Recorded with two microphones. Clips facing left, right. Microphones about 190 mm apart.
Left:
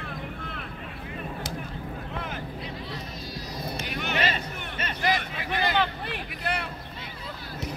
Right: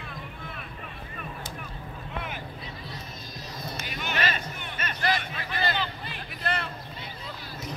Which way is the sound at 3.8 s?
60° left (ahead or behind).